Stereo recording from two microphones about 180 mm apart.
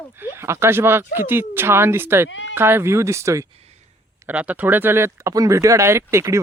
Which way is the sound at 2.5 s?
15° right (ahead or behind).